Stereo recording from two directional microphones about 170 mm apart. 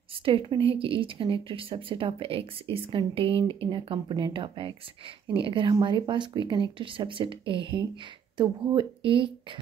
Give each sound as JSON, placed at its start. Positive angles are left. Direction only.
{"t": 0.1, "sound": "a woman's voice", "side_deg": -30}